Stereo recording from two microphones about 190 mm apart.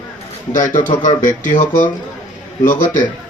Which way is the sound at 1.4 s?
40° left (ahead or behind).